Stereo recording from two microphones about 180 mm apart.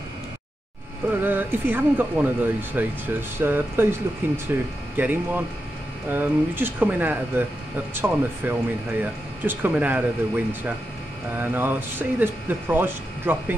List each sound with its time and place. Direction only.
1.2 s speech: 10° right (ahead or behind)